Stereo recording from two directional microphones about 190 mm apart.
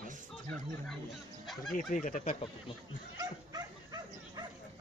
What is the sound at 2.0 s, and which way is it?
Speech, 40° left (ahead or behind).